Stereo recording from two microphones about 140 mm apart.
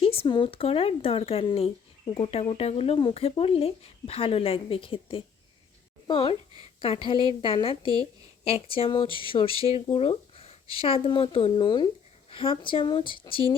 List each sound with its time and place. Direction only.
0.0 s a woman's voice: 40° left (ahead or behind)